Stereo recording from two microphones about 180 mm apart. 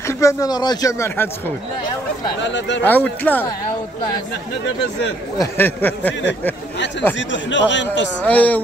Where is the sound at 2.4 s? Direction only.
90° left.